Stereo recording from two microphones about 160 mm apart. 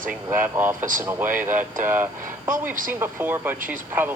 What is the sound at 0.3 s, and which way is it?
Speech, 15° right (ahead or behind).